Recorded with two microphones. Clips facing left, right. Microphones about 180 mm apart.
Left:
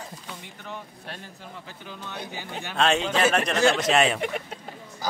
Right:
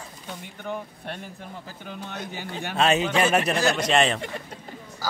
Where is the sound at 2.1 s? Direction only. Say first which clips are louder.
Even; 55° right (ahead or behind).